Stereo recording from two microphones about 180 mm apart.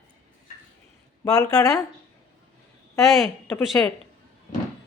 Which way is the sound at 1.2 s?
20° left (ahead or behind).